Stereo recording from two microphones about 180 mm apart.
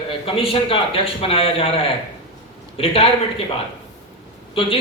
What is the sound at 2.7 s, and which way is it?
Speech, 35° left (ahead or behind).